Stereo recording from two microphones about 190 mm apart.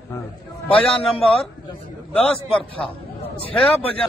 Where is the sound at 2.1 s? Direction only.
5° left (ahead or behind).